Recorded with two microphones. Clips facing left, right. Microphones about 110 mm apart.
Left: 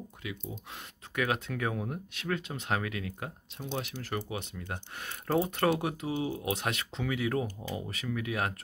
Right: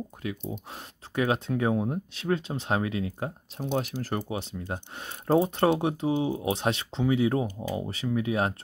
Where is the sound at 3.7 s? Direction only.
40° right (ahead or behind).